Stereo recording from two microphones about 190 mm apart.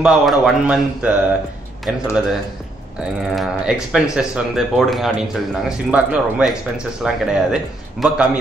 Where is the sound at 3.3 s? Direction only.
Centre (ahead or behind).